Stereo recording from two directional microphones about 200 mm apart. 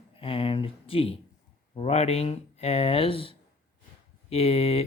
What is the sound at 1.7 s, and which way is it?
Speech, 30° left (ahead or behind).